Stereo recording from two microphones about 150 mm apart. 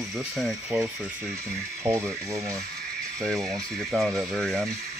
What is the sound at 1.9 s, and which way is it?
Speech, 20° right (ahead or behind).